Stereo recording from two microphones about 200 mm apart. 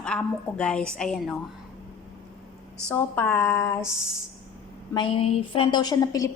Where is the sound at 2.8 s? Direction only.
10° left (ahead or behind).